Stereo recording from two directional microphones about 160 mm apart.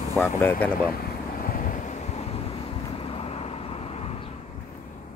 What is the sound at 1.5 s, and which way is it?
Vehicle, 60° left (ahead or behind).